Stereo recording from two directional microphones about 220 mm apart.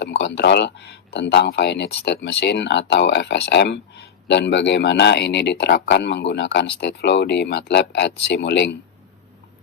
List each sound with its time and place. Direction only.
0.0 s speech: 55° left (ahead or behind)